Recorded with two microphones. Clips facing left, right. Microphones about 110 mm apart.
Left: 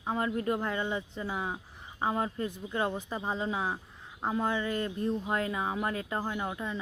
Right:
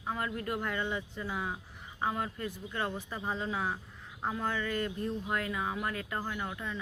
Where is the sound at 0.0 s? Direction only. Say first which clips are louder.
Left 5 dB; 25° left (ahead or behind).